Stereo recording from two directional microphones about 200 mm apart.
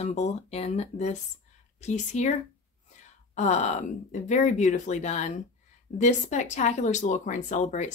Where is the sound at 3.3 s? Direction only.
35° left (ahead or behind).